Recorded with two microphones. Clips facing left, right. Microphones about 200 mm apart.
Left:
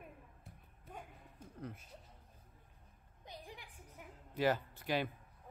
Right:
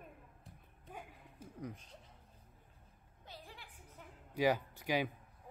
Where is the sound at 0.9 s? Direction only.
10° right (ahead or behind).